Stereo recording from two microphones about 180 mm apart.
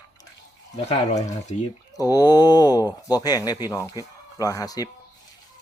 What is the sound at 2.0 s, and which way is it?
A man's voice, 20° left (ahead or behind).